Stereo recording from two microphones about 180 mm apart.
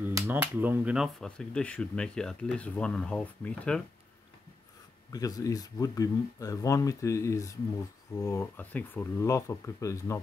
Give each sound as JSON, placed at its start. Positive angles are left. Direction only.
{"t": 0.0, "sound": "speech", "side_deg": -10}
{"t": 5.1, "sound": "speech", "side_deg": 20}